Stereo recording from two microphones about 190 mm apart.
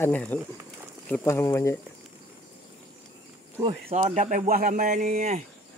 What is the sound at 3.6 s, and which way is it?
Speech, 30° right (ahead or behind).